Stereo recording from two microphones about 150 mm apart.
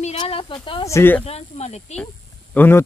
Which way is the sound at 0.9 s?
15° left (ahead or behind).